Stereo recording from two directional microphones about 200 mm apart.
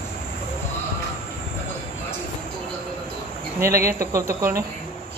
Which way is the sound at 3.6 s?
15° right (ahead or behind).